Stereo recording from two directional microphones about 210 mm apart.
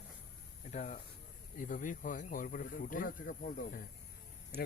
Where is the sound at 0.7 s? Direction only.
35° left (ahead or behind).